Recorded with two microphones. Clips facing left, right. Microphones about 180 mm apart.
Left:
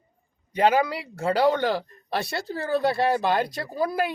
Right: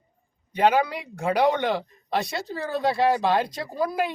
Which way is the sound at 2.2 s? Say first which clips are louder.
Left 1 dB; 5° left (ahead or behind).